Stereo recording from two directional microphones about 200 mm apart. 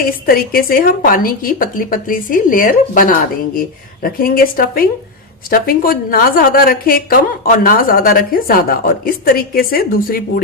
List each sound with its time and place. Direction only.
0.0 s a woman's voice: 45° left (ahead or behind)